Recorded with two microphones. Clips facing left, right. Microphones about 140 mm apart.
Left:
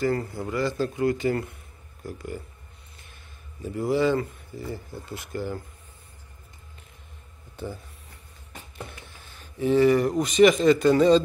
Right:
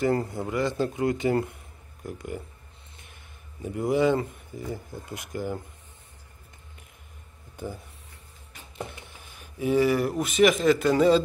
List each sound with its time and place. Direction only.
0.0 s speech: 25° right (ahead or behind)
3.6 s speech: 20° right (ahead or behind)
7.5 s speech: 15° right (ahead or behind)